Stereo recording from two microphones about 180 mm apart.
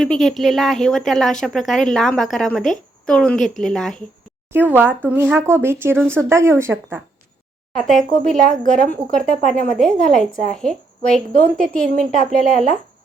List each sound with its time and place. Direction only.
0.0 s speech: centre (ahead or behind)
4.5 s speech: 10° right (ahead or behind)
7.8 s speech: centre (ahead or behind)